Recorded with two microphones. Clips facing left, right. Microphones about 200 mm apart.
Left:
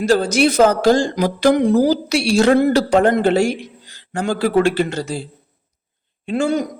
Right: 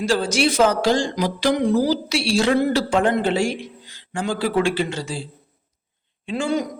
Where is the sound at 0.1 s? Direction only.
40° left (ahead or behind).